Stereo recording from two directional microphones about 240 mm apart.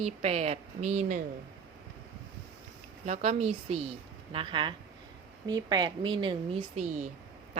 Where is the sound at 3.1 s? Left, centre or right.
Right.